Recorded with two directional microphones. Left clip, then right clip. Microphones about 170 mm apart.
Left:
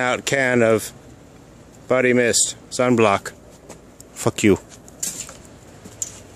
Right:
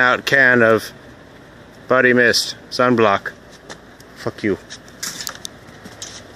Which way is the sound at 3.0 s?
25° left (ahead or behind).